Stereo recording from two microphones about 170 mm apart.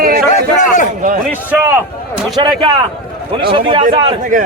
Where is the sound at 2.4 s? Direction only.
25° right (ahead or behind).